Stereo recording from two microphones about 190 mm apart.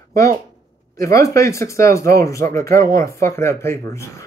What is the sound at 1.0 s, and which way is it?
Speech, 15° left (ahead or behind).